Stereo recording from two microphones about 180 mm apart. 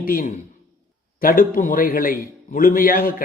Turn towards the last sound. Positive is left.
turn(degrees=50)  # may be behind; listen again after turning